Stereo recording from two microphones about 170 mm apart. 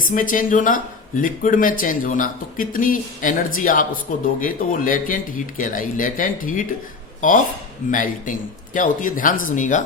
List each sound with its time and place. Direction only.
0.1 s speech: 50° left (ahead or behind)
7.9 s speech: 50° left (ahead or behind)